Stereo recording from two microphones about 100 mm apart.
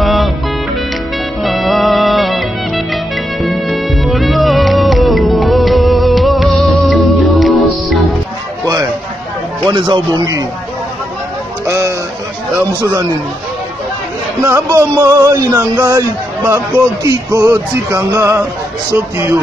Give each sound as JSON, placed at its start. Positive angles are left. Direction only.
{"t": 0.0, "sound": "music", "side_deg": 0}
{"t": 1.4, "sound": "music", "side_deg": 0}
{"t": 9.7, "sound": "a man's voice", "side_deg": -50}
{"t": 11.6, "sound": "a sound", "side_deg": -30}
{"t": 14.4, "sound": "speech", "side_deg": -30}